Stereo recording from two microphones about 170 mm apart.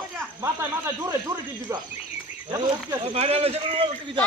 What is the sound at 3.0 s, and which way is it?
Speech, 40° right (ahead or behind).